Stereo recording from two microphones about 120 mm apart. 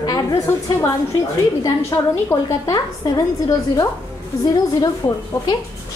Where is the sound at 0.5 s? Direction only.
20° left (ahead or behind).